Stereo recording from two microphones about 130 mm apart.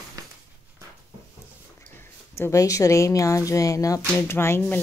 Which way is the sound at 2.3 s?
20° left (ahead or behind).